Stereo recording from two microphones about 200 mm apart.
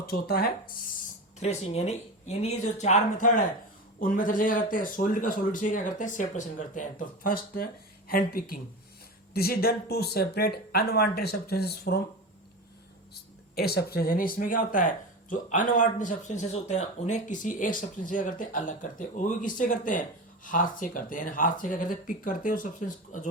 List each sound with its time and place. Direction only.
0.0 s speech: 50° left (ahead or behind)
1.4 s speech: 35° left (ahead or behind); by 11.9 s 55° left (ahead or behind)
13.6 s speech: 50° left (ahead or behind)